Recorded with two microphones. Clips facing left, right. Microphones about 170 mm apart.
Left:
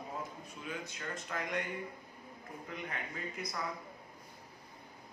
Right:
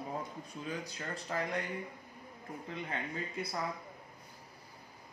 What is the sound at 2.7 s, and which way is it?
Speech, 30° right (ahead or behind).